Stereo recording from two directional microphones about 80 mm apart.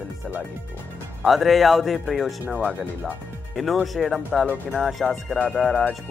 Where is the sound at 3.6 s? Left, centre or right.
Centre.